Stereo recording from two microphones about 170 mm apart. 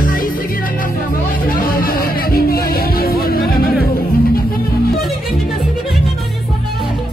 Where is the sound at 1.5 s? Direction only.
60° left (ahead or behind).